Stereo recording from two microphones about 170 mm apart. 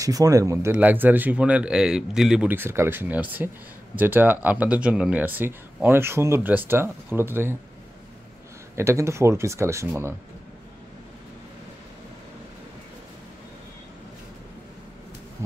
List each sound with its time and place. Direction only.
0.0 s speech: 20° right (ahead or behind)
8.7 s speech: 15° right (ahead or behind)